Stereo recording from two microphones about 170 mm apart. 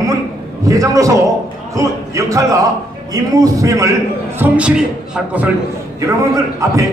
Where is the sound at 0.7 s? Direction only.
20° right (ahead or behind).